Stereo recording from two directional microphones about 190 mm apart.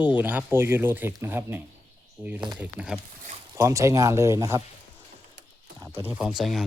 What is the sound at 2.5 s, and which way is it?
Speech, 5° right (ahead or behind).